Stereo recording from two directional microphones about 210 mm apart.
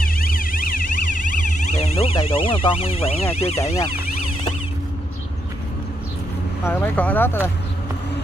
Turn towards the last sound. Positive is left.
turn(degrees=10)  # may be behind; listen again after turning